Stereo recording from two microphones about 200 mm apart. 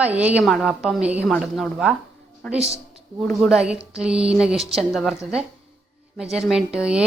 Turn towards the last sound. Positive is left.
turn(degrees=-5)  # may be behind; listen again after turning